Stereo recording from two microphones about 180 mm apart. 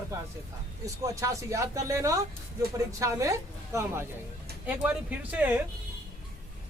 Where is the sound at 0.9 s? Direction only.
15° right (ahead or behind).